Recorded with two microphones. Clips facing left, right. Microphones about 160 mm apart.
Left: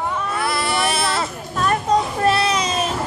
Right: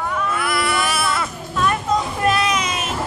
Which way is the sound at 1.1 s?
35° left (ahead or behind).